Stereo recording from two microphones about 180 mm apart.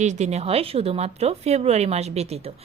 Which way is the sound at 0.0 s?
40° right (ahead or behind).